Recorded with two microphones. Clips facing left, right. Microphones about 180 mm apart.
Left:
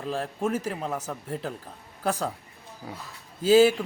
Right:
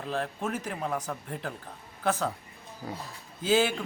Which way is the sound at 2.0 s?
10° left (ahead or behind).